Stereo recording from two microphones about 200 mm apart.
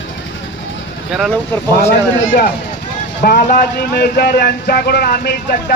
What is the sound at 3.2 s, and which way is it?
Speech, 50° left (ahead or behind).